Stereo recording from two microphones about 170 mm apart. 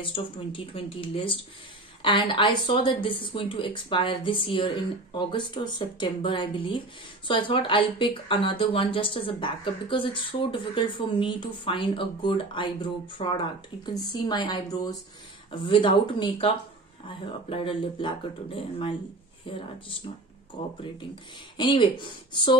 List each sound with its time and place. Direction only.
0.0 s speech: 30° left (ahead or behind)